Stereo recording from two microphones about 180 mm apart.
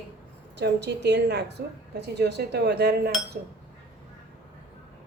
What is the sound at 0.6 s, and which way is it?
A woman's voice, 70° right (ahead or behind).